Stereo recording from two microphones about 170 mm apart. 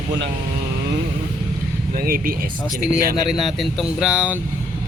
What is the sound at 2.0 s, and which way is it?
Speech, 60° right (ahead or behind).